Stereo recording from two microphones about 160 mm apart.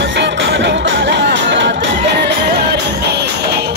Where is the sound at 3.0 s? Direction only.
90° right.